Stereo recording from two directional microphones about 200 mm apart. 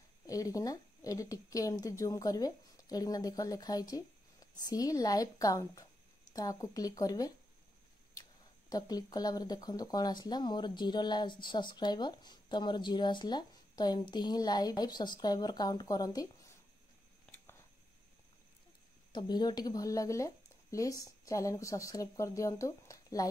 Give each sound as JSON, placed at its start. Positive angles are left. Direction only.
{"t": 0.3, "sound": "a woman's voice", "side_deg": 15}
{"t": 8.6, "sound": "speech", "side_deg": 20}
{"t": 19.1, "sound": "a woman's voice", "side_deg": 20}